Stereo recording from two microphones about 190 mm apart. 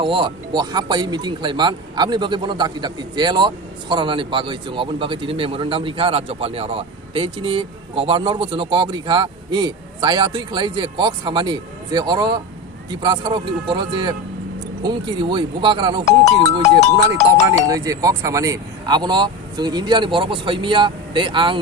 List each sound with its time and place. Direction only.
0.0 s speech: 25° right (ahead or behind)
16.8 s speech: 35° left (ahead or behind)
17.7 s speech: 20° right (ahead or behind)